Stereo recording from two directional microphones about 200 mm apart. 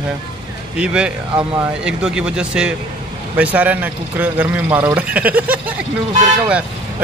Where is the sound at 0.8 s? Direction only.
5° right (ahead or behind).